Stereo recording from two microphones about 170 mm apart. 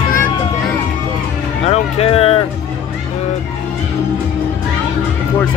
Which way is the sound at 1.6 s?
35° left (ahead or behind).